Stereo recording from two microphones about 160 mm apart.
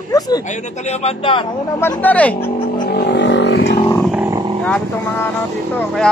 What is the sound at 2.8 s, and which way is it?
Wild animals, 80° left.